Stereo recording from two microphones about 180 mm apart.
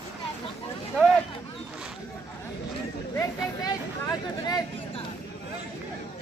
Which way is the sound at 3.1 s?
20° left (ahead or behind).